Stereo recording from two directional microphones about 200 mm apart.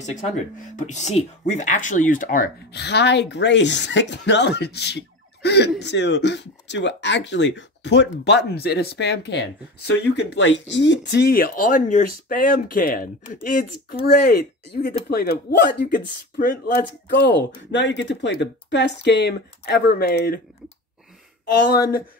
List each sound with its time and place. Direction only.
0.0 s speech: 35° left (ahead or behind); by 20.3 s 50° left (ahead or behind)